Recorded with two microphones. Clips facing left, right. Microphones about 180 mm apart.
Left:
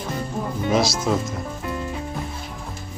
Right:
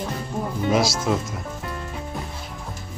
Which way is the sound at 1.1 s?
5° right (ahead or behind).